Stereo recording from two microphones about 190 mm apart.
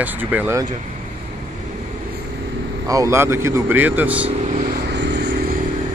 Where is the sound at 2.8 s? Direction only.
15° right (ahead or behind).